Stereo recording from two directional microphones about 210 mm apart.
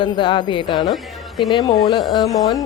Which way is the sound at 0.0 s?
20° left (ahead or behind).